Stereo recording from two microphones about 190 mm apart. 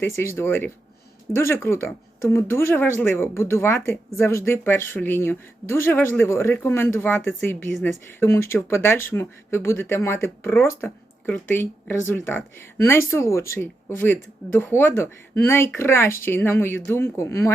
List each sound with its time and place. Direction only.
0.0 s speech: 15° left (ahead or behind)